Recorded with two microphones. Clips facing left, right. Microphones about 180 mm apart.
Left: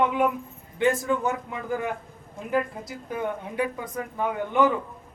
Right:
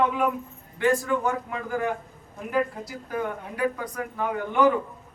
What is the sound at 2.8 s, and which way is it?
A man's voice, 20° left (ahead or behind).